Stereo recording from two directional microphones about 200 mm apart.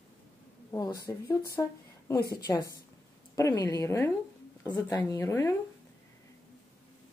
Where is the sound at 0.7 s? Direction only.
15° left (ahead or behind).